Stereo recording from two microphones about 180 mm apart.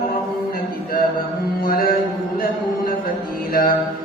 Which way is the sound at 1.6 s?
55° left (ahead or behind).